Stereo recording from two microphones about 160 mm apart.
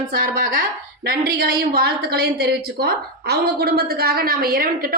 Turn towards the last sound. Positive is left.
turn(degrees=-65)  # may be behind; listen again after turning